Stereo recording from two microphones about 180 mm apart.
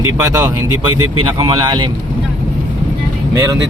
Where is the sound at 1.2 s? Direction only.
25° right (ahead or behind).